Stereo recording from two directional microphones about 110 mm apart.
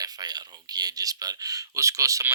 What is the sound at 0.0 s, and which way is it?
Speech, 40° right (ahead or behind).